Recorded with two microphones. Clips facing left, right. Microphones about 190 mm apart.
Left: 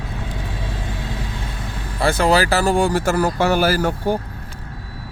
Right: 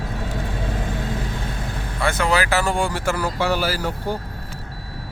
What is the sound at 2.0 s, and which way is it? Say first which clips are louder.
Speech: left 4 dB; 35° left (ahead or behind).